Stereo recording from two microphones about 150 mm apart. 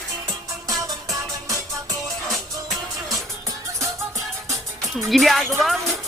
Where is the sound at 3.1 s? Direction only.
20° right (ahead or behind).